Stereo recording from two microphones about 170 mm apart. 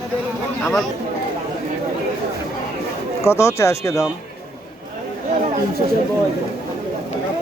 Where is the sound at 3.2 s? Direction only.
15° left (ahead or behind).